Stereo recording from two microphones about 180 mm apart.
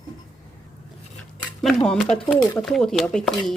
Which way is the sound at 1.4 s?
5° left (ahead or behind).